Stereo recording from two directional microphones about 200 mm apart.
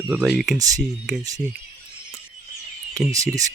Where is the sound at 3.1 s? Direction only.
15° right (ahead or behind).